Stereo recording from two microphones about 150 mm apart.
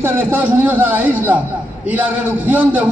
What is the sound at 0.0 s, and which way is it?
A man's voice, 15° right (ahead or behind).